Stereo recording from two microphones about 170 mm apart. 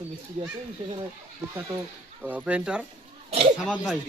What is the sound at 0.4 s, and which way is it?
Speech, 40° right (ahead or behind).